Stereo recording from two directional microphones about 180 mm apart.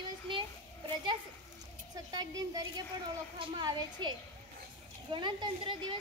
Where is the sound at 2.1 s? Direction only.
20° right (ahead or behind).